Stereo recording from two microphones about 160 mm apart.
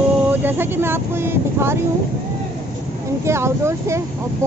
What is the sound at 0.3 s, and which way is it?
Speech, 10° right (ahead or behind).